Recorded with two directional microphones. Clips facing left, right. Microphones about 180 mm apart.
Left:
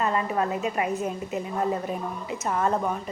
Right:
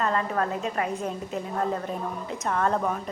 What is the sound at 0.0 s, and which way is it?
Speech, 10° left (ahead or behind).